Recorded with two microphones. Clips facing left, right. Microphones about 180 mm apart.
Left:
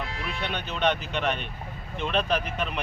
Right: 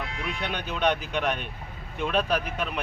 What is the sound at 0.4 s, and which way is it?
Speech, 10° right (ahead or behind).